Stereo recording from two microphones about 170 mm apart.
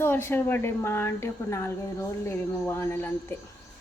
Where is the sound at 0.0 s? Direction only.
15° left (ahead or behind).